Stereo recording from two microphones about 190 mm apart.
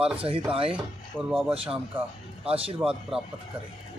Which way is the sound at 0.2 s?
30° right (ahead or behind).